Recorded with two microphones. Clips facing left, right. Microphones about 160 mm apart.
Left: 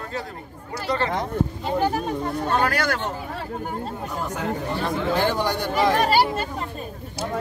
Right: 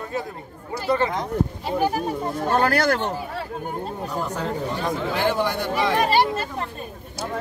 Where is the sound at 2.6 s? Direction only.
35° right (ahead or behind).